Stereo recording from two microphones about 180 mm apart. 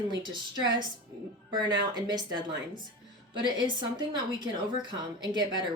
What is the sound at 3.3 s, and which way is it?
A woman's voice, 25° right (ahead or behind).